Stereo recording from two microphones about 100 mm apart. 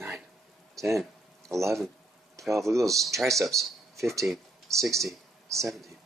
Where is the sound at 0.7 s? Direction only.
30° right (ahead or behind).